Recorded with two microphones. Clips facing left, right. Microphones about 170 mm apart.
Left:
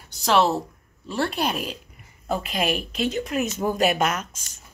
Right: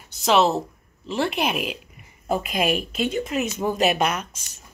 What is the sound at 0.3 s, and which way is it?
Speech, 20° right (ahead or behind).